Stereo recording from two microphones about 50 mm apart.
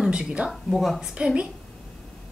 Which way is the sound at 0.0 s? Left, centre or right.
Centre.